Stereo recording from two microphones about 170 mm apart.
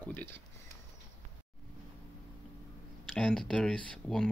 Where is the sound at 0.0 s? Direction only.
10° left (ahead or behind).